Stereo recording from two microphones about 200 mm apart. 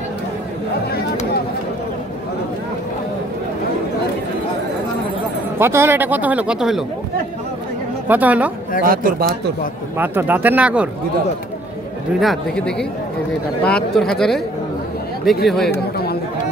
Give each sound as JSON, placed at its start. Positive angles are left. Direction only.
{"t": 5.6, "sound": "speech", "side_deg": -10}
{"t": 8.1, "sound": "speech", "side_deg": -10}
{"t": 8.8, "sound": "speech", "side_deg": -45}
{"t": 9.9, "sound": "speech", "side_deg": -10}
{"t": 12.2, "sound": "speech", "side_deg": 0}
{"t": 15.4, "sound": "speech", "side_deg": 0}